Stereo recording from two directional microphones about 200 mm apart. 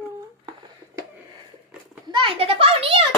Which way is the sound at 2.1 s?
25° right (ahead or behind).